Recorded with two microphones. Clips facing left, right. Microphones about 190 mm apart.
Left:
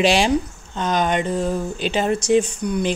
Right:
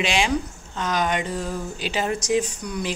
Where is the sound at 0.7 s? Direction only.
30° left (ahead or behind).